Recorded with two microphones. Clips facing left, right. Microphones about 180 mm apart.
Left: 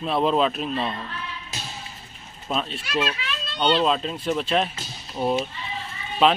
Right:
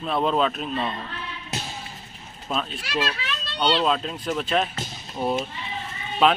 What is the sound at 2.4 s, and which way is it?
A man's voice, centre (ahead or behind).